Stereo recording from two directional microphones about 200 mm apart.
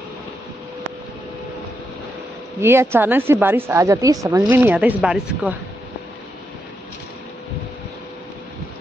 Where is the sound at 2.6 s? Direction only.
10° right (ahead or behind).